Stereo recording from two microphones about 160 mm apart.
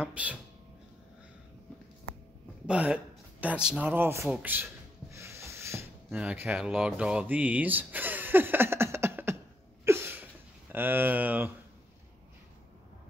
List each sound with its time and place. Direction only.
0.0 s speech: 10° right (ahead or behind)
2.6 s speech: 5° right (ahead or behind)
5.1 s rub: 15° right (ahead or behind)
6.1 s speech: 10° right (ahead or behind)
9.8 s a sound: 15° right (ahead or behind)
10.7 s speech: 10° right (ahead or behind)